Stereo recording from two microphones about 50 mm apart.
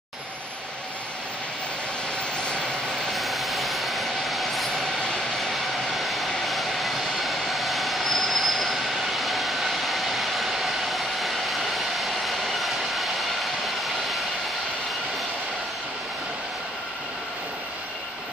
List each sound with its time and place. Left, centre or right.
2.3 s vehicle: centre
3.1 s train: centre
5.4 s vehicle: centre